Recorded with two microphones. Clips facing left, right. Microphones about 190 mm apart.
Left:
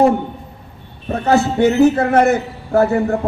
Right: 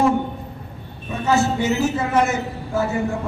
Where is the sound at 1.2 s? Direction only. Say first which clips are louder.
Left 5 dB; 60° left (ahead or behind).